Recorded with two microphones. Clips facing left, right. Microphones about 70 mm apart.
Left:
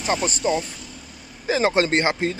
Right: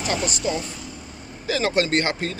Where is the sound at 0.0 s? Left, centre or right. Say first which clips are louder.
Left 2 dB; left.